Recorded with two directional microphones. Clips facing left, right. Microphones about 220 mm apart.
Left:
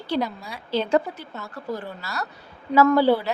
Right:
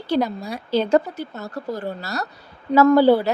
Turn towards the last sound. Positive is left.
turn(degrees=-40)  # may be behind; listen again after turning